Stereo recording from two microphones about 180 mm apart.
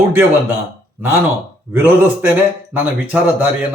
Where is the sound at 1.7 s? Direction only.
10° right (ahead or behind).